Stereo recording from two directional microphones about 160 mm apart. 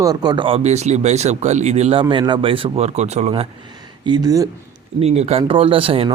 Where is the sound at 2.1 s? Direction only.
30° right (ahead or behind).